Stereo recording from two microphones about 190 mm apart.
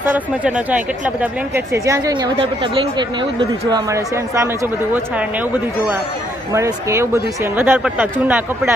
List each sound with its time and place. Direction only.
0.1 s speech: 10° right (ahead or behind)
6.5 s speech: 15° right (ahead or behind)